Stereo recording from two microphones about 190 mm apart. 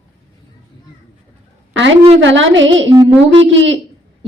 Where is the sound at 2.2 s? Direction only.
80° right.